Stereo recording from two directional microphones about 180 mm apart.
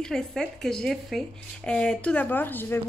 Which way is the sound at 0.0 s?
5° left (ahead or behind).